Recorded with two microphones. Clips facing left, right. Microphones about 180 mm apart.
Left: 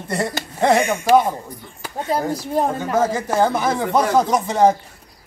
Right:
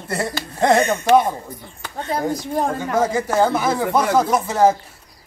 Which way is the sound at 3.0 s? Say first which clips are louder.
Right 1 dB; 10° right (ahead or behind).